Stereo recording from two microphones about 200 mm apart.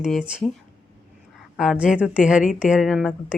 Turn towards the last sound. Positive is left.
turn(degrees=0)  # may be behind; listen again after turning